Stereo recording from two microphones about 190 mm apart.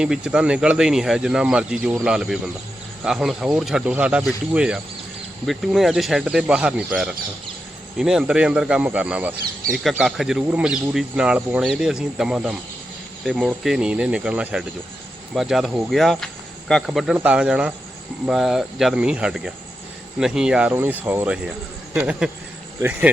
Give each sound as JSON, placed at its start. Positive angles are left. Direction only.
{"t": 0.0, "sound": "speech", "side_deg": -5}